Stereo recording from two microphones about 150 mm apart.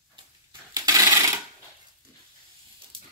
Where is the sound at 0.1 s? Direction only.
30° right (ahead or behind).